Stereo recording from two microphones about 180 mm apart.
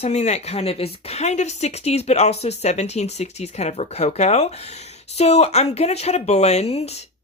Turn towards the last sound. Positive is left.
turn(degrees=35)  # may be behind; listen again after turning